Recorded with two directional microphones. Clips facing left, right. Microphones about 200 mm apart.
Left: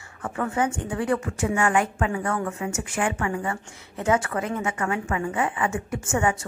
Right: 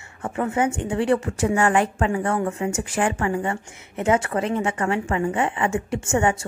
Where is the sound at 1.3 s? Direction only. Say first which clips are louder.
Right 3 dB; 35° right (ahead or behind).